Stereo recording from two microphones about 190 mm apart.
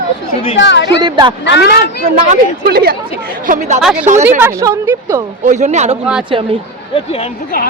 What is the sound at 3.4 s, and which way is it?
Speech, 45° right (ahead or behind).